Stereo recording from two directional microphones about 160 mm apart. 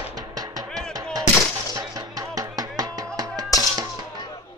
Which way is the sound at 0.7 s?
5° left (ahead or behind).